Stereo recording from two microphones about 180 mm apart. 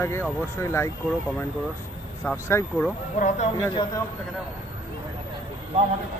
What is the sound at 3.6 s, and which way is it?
Speech, 25° left (ahead or behind).